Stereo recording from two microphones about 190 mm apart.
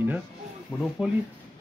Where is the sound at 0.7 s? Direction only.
10° left (ahead or behind).